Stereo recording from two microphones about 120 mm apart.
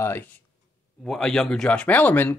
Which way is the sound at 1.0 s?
5° left (ahead or behind).